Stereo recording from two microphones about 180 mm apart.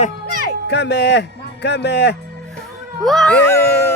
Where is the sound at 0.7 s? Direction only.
75° left (ahead or behind).